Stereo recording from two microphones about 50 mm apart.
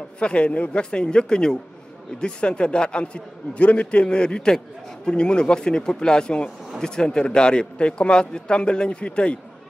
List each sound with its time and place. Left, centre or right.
0.2 s a man's voice: left